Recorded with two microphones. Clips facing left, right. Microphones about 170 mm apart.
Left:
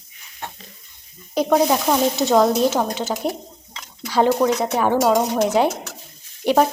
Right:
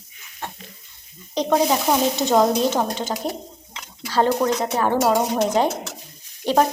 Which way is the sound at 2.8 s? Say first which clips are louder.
Left 1 dB; 10° right (ahead or behind).